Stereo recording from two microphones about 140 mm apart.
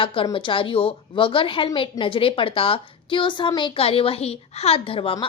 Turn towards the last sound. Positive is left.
turn(degrees=40)  # may be behind; listen again after turning